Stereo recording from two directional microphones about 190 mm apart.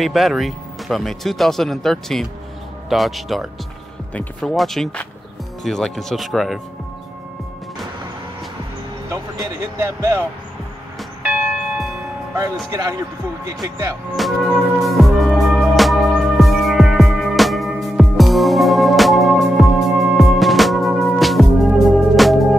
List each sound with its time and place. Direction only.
0.0 s speech: centre (ahead or behind)
9.1 s speech: 15° right (ahead or behind)
13.5 s speech: 20° right (ahead or behind)
14.1 s music: centre (ahead or behind)